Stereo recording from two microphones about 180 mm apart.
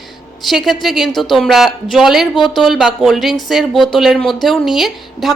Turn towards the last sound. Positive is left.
turn(degrees=0)  # may be behind; listen again after turning